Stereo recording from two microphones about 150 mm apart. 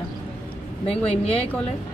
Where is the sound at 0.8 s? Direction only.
40° left (ahead or behind).